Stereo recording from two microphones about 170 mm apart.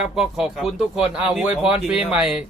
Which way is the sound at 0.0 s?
5° right (ahead or behind).